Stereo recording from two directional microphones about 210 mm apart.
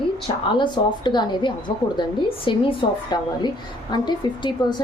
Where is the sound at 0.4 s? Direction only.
20° left (ahead or behind).